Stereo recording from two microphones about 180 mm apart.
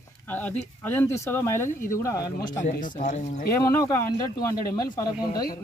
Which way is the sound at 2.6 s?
45° left (ahead or behind).